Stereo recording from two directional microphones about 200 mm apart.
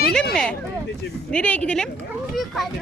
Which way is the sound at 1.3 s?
5° left (ahead or behind).